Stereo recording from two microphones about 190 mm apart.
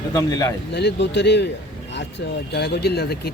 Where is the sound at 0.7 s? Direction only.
60° left (ahead or behind).